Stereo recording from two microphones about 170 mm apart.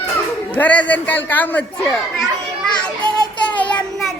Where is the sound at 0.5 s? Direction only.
10° left (ahead or behind).